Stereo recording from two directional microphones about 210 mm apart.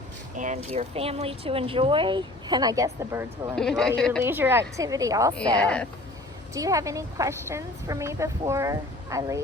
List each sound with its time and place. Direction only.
0.3 s speech: 35° right (ahead or behind); by 3.5 s 15° right (ahead or behind)
3.5 s speech: centre (ahead or behind)
4.2 s a woman's voice: 10° right (ahead or behind)
5.5 s speech: 5° left (ahead or behind)
6.5 s a woman's voice: 15° right (ahead or behind)